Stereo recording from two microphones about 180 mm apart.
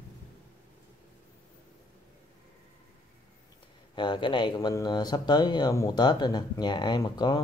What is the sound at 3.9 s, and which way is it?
Speech, 25° left (ahead or behind).